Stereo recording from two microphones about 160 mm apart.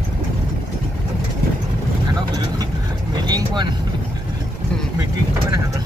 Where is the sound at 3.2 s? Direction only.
30° right (ahead or behind).